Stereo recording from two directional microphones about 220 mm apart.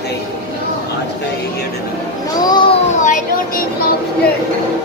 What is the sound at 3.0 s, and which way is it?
Speech, 35° left (ahead or behind).